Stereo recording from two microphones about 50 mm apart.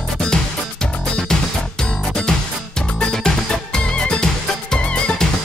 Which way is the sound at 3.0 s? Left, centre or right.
Centre.